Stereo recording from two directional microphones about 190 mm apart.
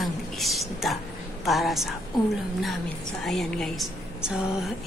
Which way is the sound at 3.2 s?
Centre (ahead or behind).